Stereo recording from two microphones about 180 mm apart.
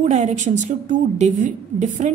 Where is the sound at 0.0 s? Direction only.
40° right (ahead or behind).